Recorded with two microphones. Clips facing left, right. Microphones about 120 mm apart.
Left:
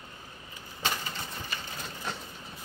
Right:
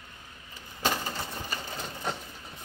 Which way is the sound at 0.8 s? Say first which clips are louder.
Right 4 dB; 40° right (ahead or behind).